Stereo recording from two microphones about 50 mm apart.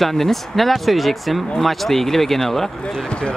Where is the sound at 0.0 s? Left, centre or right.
Centre.